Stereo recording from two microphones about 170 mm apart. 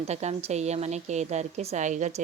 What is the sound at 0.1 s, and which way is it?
A woman's voice, 40° right (ahead or behind).